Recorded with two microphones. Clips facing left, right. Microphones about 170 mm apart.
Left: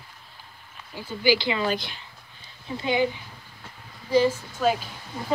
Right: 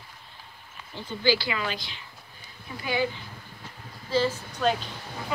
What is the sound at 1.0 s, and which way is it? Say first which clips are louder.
Speech: left 2 dB; 10° left (ahead or behind).